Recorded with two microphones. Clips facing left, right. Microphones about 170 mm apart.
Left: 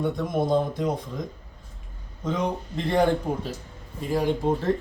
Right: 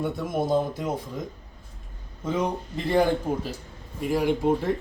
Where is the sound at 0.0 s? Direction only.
5° right (ahead or behind).